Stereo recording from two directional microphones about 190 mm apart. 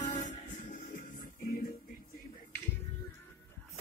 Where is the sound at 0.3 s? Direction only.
45° left (ahead or behind).